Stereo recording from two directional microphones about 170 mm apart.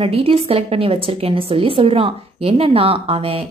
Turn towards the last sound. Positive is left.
turn(degrees=-30)  # may be behind; listen again after turning